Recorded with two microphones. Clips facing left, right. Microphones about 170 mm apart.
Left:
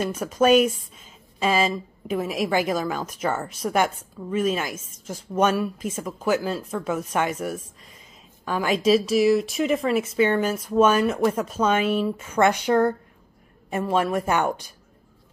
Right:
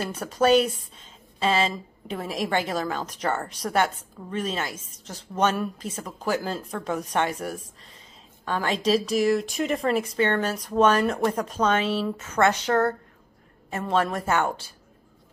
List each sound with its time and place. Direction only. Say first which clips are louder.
0.1 s a woman's voice: left 1 dB; 10° left (ahead or behind)
7.2 s speech: left 2 dB; 35° right (ahead or behind)
8.5 s a woman's voice: left 3 dB; 10° left (ahead or behind)